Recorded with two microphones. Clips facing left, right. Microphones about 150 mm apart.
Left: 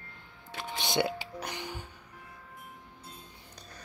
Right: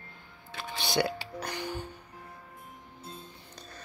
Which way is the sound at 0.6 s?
20° left (ahead or behind).